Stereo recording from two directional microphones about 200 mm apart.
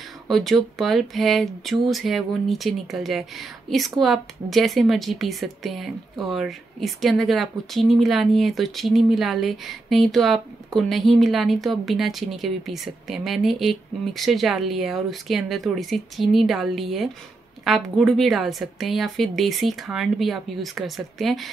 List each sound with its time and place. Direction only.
0.3 s speech: centre (ahead or behind)